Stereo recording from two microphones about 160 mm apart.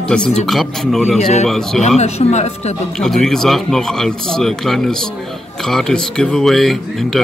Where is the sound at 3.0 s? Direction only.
Centre (ahead or behind).